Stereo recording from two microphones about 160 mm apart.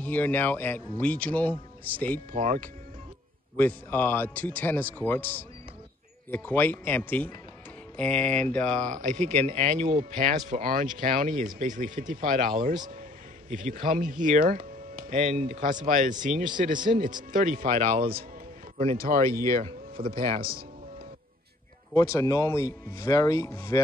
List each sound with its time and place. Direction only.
0.0 s speech: 10° left (ahead or behind)
3.5 s speech: 15° left (ahead or behind)
8.9 s speech: 50° right (ahead or behind)
18.9 s speech: 65° right (ahead or behind)
21.9 s speech: 20° left (ahead or behind)